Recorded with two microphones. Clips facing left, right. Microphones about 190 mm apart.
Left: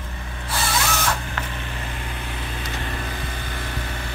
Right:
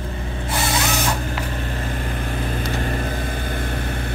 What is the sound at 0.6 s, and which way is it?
Printer, 15° right (ahead or behind).